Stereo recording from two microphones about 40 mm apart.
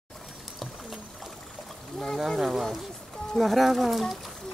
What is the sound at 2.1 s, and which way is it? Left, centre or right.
Speech, centre.